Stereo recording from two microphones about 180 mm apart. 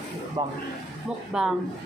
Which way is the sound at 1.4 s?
5° right (ahead or behind).